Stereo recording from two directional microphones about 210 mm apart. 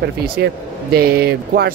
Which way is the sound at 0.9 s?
45° right (ahead or behind).